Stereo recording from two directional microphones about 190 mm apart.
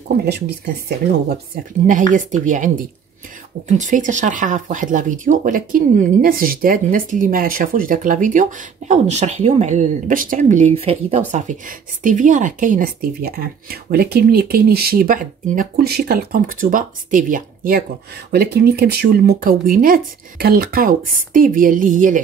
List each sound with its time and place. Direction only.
1.5 s speech: 40° right (ahead or behind)
18.3 s speech: 55° right (ahead or behind)